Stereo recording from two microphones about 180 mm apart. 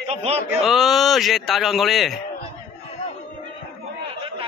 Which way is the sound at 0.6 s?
Centre (ahead or behind).